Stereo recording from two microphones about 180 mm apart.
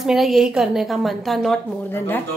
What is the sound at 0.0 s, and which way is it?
A woman's voice, centre (ahead or behind).